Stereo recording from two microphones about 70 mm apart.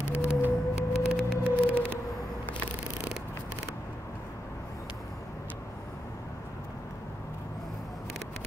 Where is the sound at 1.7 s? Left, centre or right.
Right.